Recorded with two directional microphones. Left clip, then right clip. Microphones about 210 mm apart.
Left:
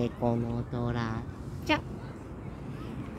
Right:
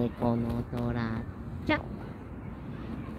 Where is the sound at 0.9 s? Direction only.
5° left (ahead or behind).